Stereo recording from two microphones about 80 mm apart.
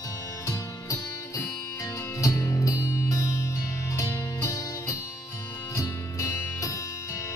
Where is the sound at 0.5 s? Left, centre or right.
Left.